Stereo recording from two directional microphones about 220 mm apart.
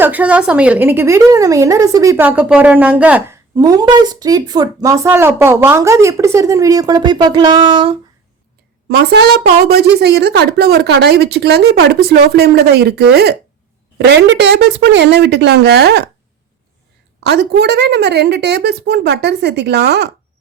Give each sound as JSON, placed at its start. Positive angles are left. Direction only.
{"t": 0.0, "sound": "speech", "side_deg": -5}
{"t": 8.9, "sound": "a woman's voice", "side_deg": -50}
{"t": 17.2, "sound": "a woman's voice", "side_deg": -50}